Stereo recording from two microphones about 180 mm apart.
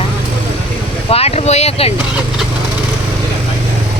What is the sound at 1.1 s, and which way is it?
Speech, 35° left (ahead or behind).